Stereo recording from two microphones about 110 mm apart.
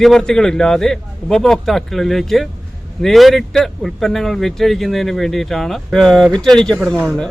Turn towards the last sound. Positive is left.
turn(degrees=5)  # may be behind; listen again after turning